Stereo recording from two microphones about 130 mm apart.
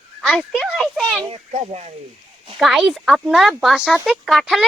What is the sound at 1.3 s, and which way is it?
Speech, 55° right (ahead or behind).